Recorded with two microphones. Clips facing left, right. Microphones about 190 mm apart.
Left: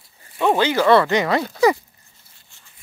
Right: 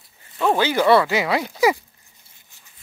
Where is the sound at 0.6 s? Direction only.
10° right (ahead or behind).